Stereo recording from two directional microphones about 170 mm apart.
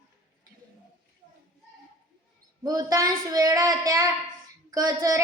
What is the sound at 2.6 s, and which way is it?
Speech, 20° right (ahead or behind).